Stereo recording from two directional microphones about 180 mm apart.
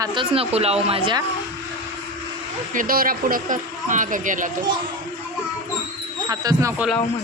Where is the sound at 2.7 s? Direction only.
55° right (ahead or behind).